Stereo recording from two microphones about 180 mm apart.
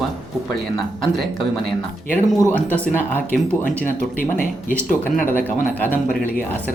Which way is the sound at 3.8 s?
50° left (ahead or behind).